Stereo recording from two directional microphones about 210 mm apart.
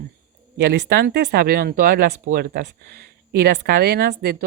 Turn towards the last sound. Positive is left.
turn(degrees=-50)  # may be behind; listen again after turning